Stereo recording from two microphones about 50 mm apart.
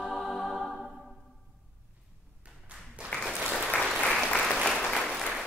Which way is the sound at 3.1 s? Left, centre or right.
Centre.